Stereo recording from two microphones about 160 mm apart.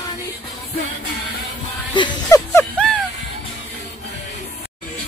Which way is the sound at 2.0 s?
25° left (ahead or behind).